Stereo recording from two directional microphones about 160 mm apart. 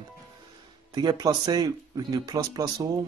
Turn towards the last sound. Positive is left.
turn(degrees=-20)  # may be behind; listen again after turning